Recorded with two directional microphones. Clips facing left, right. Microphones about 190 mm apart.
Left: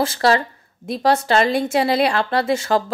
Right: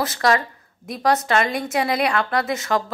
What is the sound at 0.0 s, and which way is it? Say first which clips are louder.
A woman's voice: left 3 dB; 30° left (ahead or behind).